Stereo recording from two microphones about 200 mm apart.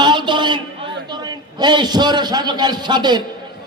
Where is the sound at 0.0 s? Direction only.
20° right (ahead or behind).